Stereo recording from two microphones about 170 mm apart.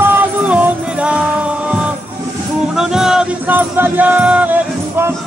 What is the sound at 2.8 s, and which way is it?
Speech, 5° right (ahead or behind).